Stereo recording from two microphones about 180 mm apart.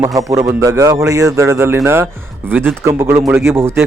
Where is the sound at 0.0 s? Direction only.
20° right (ahead or behind).